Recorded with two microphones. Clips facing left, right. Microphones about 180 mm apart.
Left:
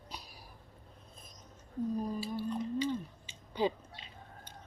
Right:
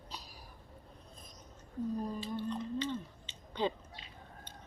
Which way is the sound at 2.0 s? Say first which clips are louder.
Left 2 dB; 10° left (ahead or behind).